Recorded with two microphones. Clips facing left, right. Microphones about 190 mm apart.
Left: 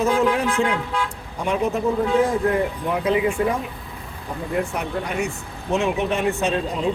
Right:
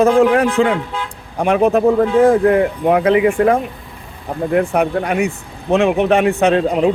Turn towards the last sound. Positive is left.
turn(degrees=-75)  # may be behind; listen again after turning